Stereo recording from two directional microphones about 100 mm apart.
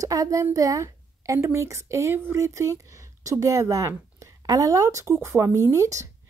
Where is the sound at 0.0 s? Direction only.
35° right (ahead or behind).